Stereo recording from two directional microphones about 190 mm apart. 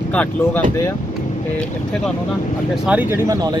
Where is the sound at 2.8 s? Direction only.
10° right (ahead or behind).